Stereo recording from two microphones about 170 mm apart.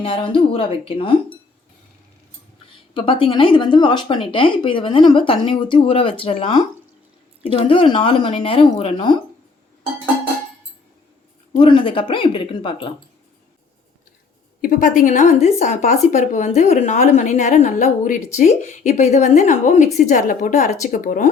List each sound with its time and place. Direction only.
0.0 s speech: 30° left (ahead or behind)
2.9 s speech: 30° left (ahead or behind)
11.5 s a woman's voice: 30° left (ahead or behind)
14.6 s a woman's voice: 55° left (ahead or behind)